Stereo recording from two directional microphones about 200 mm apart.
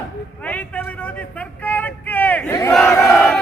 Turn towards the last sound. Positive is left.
turn(degrees=10)  # may be behind; listen again after turning